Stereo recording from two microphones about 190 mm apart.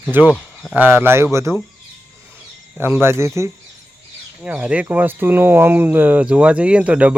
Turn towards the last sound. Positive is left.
turn(degrees=-5)  # may be behind; listen again after turning